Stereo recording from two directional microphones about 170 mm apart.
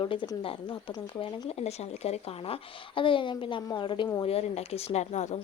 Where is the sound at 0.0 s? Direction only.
30° left (ahead or behind).